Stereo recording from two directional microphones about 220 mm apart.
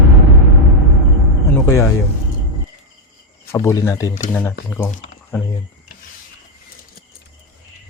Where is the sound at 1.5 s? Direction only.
10° left (ahead or behind).